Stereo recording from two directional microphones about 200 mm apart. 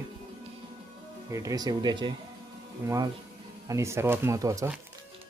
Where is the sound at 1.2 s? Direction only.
15° right (ahead or behind).